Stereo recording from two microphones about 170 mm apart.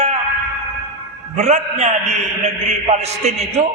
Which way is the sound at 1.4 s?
40° right (ahead or behind).